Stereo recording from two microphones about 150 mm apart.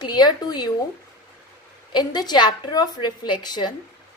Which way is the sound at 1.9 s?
30° left (ahead or behind).